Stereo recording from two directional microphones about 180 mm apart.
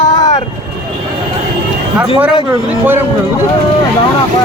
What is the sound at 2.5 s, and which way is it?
Speech, 15° right (ahead or behind).